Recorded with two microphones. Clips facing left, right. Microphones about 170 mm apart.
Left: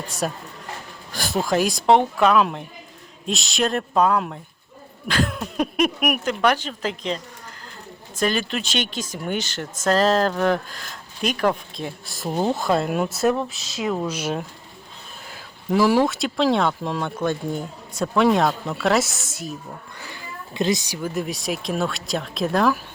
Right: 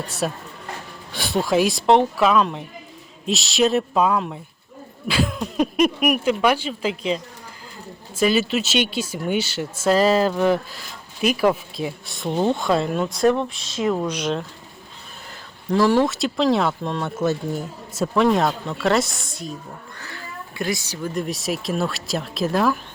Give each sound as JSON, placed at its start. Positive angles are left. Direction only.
{"t": 0.2, "sound": "speech", "side_deg": 0}
{"t": 20.0, "sound": "speech", "side_deg": 15}